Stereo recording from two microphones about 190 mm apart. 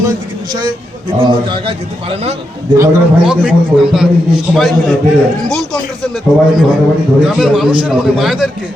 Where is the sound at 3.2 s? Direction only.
5° right (ahead or behind).